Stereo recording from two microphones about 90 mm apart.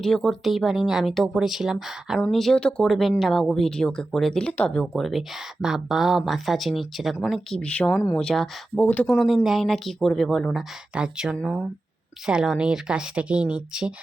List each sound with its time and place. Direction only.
0.0 s speech: 5° left (ahead or behind)
2.8 s speech: centre (ahead or behind)
7.6 s speech: 15° left (ahead or behind)
8.7 s speech: 20° left (ahead or behind)
9.1 s speech: centre (ahead or behind)
10.9 s speech: 10° right (ahead or behind)